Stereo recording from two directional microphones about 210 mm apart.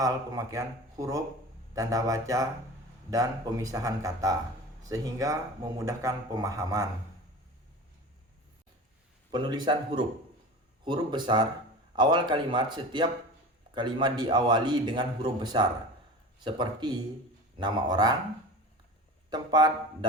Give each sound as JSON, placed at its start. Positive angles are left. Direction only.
{"t": 0.0, "sound": "speech", "side_deg": -15}
{"t": 9.3, "sound": "a man's voice", "side_deg": -20}
{"t": 19.3, "sound": "a man's voice", "side_deg": -20}